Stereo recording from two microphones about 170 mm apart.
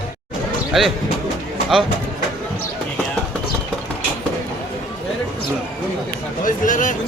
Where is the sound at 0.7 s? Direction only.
Centre (ahead or behind).